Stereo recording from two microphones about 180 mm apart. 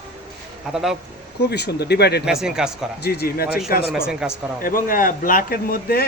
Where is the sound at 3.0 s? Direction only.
60° left (ahead or behind).